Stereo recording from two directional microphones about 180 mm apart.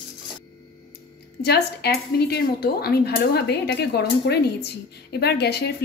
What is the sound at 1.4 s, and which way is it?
Speech, 60° left (ahead or behind).